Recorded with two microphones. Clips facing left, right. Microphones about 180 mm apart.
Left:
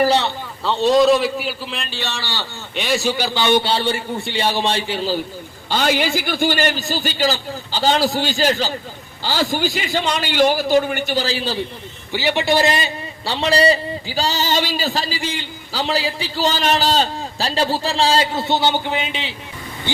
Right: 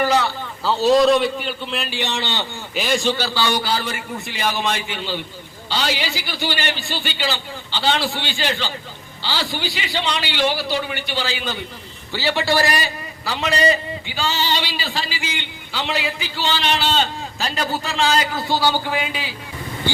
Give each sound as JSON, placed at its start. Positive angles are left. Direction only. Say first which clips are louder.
{"t": 0.0, "sound": "a sound", "louder": "left 2 dB", "side_deg": 30}
{"t": 0.6, "sound": "a man's voice", "louder": "even", "side_deg": 0}
{"t": 1.9, "sound": "a man's voice", "louder": "right 3 dB", "side_deg": -20}
{"t": 2.7, "sound": "a man's voice", "louder": "even", "side_deg": 0}
{"t": 5.6, "sound": "a man's voice", "louder": "left 5 dB", "side_deg": 50}
{"t": 12.1, "sound": "a man's voice", "louder": "left 2 dB", "side_deg": 15}